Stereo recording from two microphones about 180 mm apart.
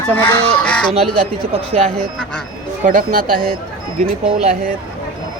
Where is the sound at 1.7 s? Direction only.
35° right (ahead or behind).